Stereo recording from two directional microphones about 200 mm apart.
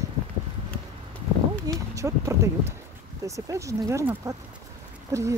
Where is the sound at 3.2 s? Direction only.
15° right (ahead or behind).